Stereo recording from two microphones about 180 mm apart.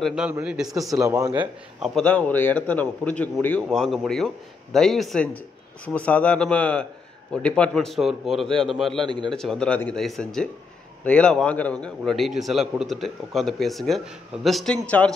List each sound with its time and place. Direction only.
0.0 s a man's voice: 5° right (ahead or behind)
1.0 s speech: 20° right (ahead or behind)
1.8 s a man's voice: 5° left (ahead or behind)